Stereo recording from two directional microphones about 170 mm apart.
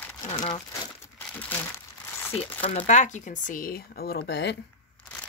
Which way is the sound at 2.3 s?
35° left (ahead or behind).